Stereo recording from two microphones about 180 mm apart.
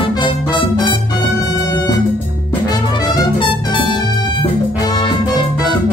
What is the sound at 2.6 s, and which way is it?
Music, 25° left (ahead or behind).